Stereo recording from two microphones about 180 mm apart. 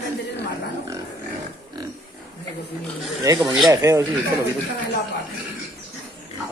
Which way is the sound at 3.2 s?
25° right (ahead or behind).